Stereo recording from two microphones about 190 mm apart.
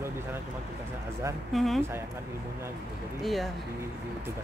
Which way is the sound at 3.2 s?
Centre (ahead or behind).